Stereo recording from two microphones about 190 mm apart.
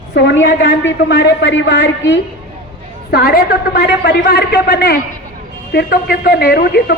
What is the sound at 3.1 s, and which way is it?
A woman's voice, 55° left (ahead or behind).